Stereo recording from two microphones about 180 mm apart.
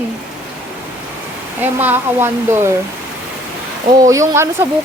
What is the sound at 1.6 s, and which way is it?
A woman's voice, 10° right (ahead or behind).